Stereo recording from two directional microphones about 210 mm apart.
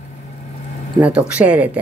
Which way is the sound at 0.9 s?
5° right (ahead or behind).